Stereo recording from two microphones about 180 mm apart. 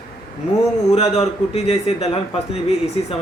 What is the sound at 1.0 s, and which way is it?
Speech, 35° left (ahead or behind).